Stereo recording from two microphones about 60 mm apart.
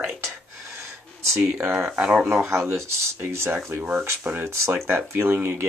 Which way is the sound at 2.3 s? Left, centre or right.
Right.